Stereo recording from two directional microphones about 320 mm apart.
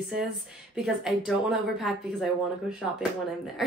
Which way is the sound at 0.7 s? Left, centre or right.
Centre.